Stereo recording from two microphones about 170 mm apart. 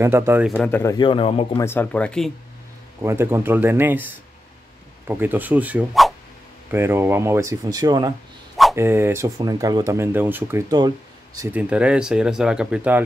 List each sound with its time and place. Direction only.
0.0 s speech: 15° right (ahead or behind)
0.5 s speech: 10° left (ahead or behind)
0.9 s a man's voice: 30° left (ahead or behind)
1.6 s speech: 10° left (ahead or behind)
3.0 s speech: 15° right (ahead or behind)